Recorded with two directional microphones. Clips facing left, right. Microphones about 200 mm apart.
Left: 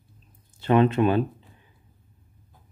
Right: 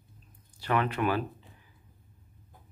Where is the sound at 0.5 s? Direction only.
25° left (ahead or behind).